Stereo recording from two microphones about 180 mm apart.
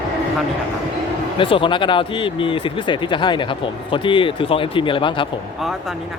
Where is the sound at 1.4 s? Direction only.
30° left (ahead or behind).